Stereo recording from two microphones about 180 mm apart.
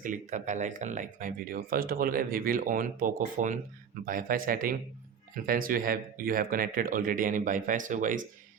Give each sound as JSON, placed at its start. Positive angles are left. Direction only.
{"t": 0.0, "sound": "speech", "side_deg": -45}